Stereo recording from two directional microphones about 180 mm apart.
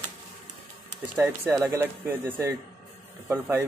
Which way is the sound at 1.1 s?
15° right (ahead or behind).